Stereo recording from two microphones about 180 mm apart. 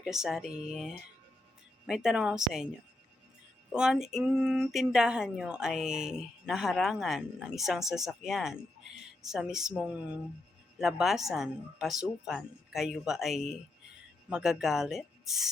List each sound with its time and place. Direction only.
0.0 s speech: 5° right (ahead or behind)
3.7 s speech: 5° right (ahead or behind)